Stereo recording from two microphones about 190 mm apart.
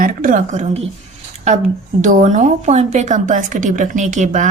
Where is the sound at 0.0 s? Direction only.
45° right (ahead or behind).